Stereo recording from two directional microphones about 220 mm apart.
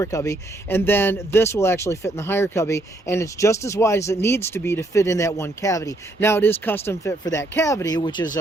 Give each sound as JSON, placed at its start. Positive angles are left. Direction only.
{"t": 0.0, "sound": "speech", "side_deg": 15}